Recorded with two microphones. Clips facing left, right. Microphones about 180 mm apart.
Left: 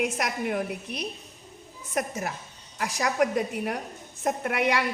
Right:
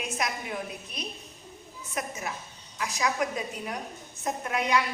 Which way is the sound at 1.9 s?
50° left (ahead or behind).